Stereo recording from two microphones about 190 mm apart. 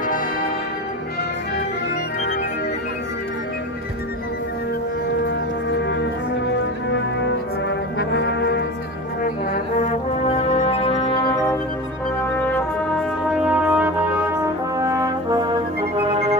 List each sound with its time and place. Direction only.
5.2 s music: 70° left (ahead or behind)
8.0 s brass instrument: 65° left (ahead or behind)
9.2 s brass instrument: 40° left (ahead or behind)
13.5 s brass instrument: 10° right (ahead or behind)